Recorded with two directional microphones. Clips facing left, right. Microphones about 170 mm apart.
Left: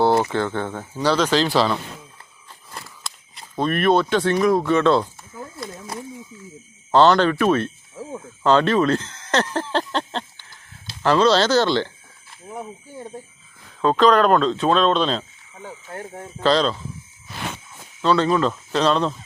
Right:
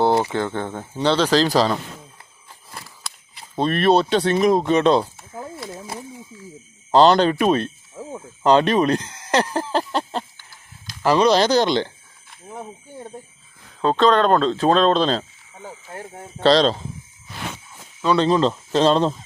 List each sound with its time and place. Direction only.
0.0 s speech: 15° right (ahead or behind)
0.9 s speech: 30° right (ahead or behind)
2.7 s a sound: centre (ahead or behind)
3.6 s speech: 30° right (ahead or behind)
6.9 s speech: 20° right (ahead or behind)
8.4 s a sound: 15° right (ahead or behind)
11.0 s speech: 10° right (ahead or behind)
13.8 s speech: 30° right (ahead or behind)
16.4 s speech: 35° right (ahead or behind)
18.0 s speech: 15° right (ahead or behind)